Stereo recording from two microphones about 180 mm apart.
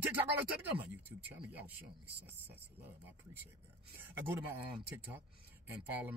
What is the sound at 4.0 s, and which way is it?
Speech, 10° right (ahead or behind).